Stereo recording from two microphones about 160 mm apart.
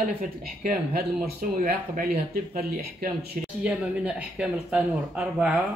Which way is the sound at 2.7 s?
60° right (ahead or behind).